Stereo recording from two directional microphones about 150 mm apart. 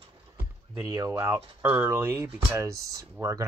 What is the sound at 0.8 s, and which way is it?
Speech, 20° right (ahead or behind).